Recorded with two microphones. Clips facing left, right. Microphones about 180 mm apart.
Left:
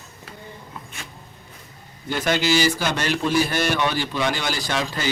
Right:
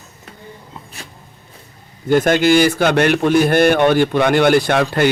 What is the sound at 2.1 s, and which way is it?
A man's voice, 50° right (ahead or behind).